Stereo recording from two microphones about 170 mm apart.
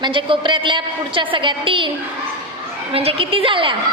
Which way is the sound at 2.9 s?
35° right (ahead or behind).